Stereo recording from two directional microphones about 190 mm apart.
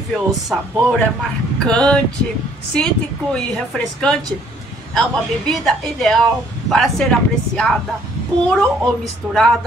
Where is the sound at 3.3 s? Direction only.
5° left (ahead or behind).